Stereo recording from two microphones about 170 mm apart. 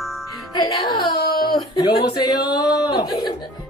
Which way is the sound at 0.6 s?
30° left (ahead or behind).